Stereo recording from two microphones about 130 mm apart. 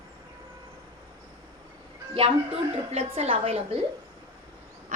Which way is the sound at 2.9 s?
55° right (ahead or behind).